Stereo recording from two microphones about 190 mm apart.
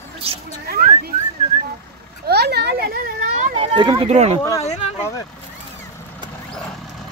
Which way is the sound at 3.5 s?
30° right (ahead or behind).